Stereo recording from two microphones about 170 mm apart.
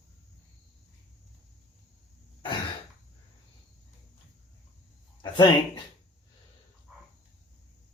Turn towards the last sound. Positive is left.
turn(degrees=-5)  # may be behind; listen again after turning